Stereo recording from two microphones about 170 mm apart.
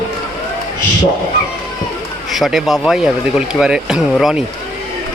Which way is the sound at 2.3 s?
Centre (ahead or behind).